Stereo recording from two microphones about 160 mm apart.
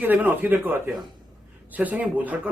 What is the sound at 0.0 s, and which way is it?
Speech, 10° right (ahead or behind).